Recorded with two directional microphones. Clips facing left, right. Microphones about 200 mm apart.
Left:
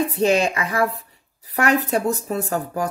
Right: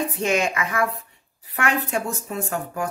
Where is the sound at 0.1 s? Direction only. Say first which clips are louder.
Left 4 dB; 35° left (ahead or behind).